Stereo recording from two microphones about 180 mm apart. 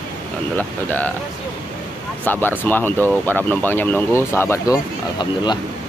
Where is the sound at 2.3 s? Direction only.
10° left (ahead or behind).